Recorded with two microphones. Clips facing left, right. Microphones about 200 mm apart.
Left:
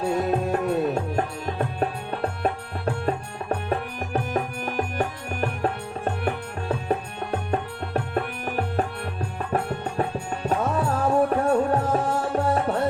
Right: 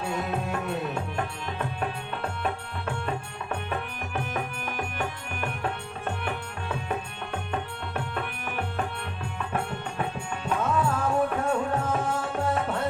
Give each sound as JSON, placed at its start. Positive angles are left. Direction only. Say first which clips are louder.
{"t": 0.0, "sound": "music", "louder": "left 7 dB", "side_deg": 40}